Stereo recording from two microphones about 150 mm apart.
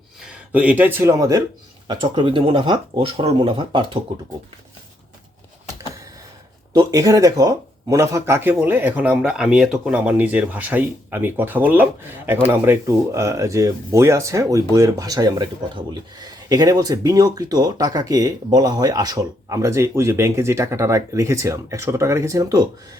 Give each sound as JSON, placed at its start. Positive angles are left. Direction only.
{"t": 0.5, "sound": "speech", "side_deg": -10}
{"t": 1.9, "sound": "speech", "side_deg": -35}
{"t": 6.7, "sound": "speech", "side_deg": -25}